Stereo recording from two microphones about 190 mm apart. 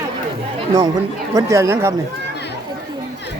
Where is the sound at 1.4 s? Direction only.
15° right (ahead or behind).